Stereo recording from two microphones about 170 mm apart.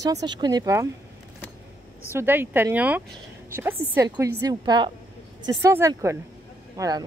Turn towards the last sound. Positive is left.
turn(degrees=-20)  # may be behind; listen again after turning